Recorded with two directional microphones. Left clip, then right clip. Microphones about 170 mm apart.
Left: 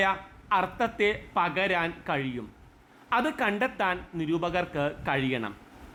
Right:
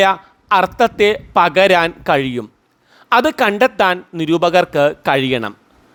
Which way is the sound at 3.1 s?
55° right (ahead or behind).